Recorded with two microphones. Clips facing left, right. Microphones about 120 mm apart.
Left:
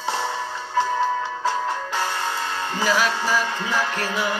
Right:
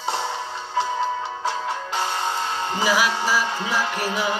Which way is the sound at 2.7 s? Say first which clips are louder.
Even; 15° right (ahead or behind).